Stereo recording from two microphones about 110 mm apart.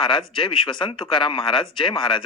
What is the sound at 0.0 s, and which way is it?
Speech, 50° left (ahead or behind).